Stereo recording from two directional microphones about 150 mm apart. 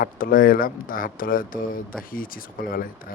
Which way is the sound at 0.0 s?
70° left (ahead or behind).